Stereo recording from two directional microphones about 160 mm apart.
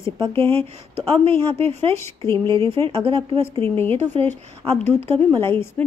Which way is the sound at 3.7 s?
15° left (ahead or behind).